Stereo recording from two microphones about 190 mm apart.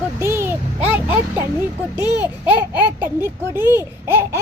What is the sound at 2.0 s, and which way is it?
Speech, 20° left (ahead or behind).